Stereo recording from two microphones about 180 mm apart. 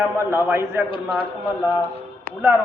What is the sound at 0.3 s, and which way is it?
Speech, 15° right (ahead or behind).